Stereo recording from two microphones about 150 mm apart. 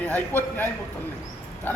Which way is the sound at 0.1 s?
15° left (ahead or behind).